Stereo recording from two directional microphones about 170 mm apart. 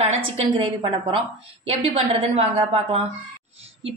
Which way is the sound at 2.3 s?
35° right (ahead or behind).